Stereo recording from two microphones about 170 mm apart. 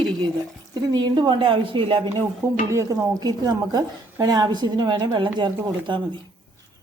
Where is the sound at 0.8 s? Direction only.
25° right (ahead or behind).